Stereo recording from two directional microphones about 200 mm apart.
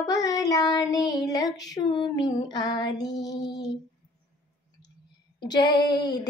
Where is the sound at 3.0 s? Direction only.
60° left (ahead or behind).